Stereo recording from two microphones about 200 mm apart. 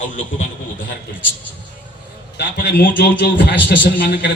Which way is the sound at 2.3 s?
60° left (ahead or behind).